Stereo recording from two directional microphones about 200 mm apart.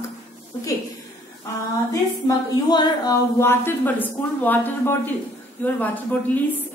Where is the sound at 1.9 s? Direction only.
15° left (ahead or behind).